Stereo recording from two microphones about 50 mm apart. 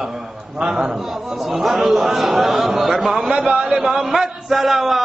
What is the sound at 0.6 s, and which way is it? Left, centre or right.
Speech, centre.